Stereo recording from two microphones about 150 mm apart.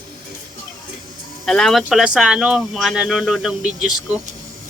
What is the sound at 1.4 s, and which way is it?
Speech, centre (ahead or behind).